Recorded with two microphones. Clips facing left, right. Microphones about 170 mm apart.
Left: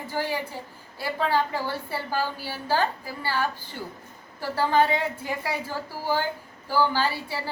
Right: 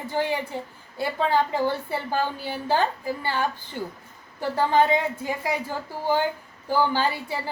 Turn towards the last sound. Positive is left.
turn(degrees=-20)  # may be behind; listen again after turning